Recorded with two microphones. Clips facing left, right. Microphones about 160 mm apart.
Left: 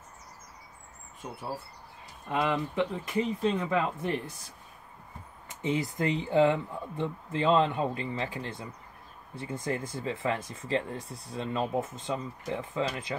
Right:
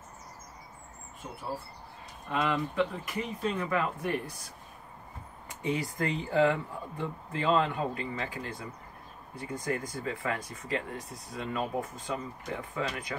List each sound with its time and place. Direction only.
2.4 s speech: 20° left (ahead or behind)
5.5 s speech: 25° left (ahead or behind)